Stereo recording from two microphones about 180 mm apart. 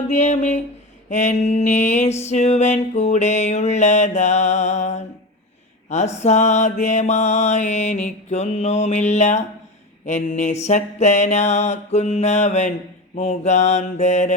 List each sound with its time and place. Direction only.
0.1 s mantra: 40° left (ahead or behind)